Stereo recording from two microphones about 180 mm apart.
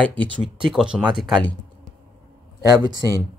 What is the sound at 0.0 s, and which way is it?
Speech, 5° left (ahead or behind).